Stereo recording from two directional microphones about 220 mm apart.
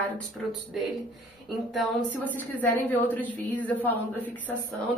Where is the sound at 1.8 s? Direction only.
5° left (ahead or behind).